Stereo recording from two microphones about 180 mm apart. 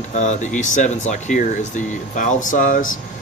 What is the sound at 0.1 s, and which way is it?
Speech, 40° left (ahead or behind).